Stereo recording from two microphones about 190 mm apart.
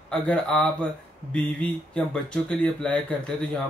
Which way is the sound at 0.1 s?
5° left (ahead or behind).